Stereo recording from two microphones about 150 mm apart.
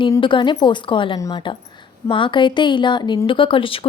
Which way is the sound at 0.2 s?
35° left (ahead or behind).